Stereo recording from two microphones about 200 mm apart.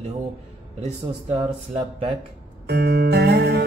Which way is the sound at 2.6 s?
55° right (ahead or behind).